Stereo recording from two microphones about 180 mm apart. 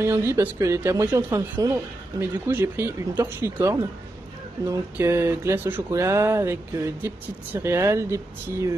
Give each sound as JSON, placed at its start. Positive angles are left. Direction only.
{"t": 0.0, "sound": "speech", "side_deg": -15}